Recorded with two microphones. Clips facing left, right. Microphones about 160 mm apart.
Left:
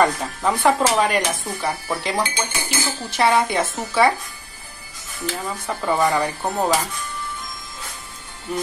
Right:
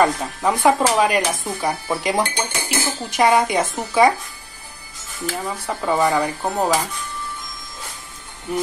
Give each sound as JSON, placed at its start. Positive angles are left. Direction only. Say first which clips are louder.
{"t": 0.0, "sound": "speech", "louder": "right 1 dB", "side_deg": -5}
{"t": 5.3, "sound": "speech", "louder": "right 1 dB", "side_deg": -10}